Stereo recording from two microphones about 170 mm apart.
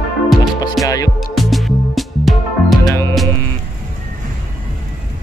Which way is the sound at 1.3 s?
Centre (ahead or behind).